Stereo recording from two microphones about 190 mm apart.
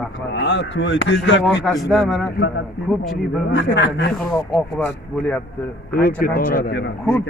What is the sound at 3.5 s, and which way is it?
Speech, 70° left (ahead or behind).